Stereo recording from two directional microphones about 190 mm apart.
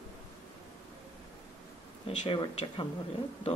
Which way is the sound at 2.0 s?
25° left (ahead or behind).